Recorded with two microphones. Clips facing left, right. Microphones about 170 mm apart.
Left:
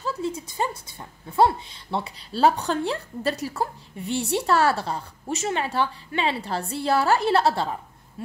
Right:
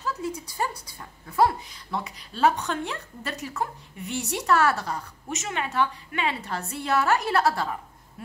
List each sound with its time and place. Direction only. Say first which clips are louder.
0.0 s speech: left 3 dB; 25° left (ahead or behind)